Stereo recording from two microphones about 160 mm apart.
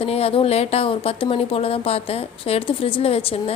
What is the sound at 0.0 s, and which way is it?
A woman's voice, 40° left (ahead or behind).